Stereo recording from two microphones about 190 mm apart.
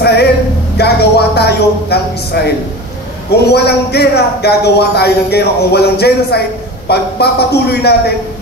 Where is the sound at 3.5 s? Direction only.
60° left (ahead or behind).